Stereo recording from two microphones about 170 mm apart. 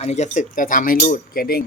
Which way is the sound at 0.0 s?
45° left (ahead or behind).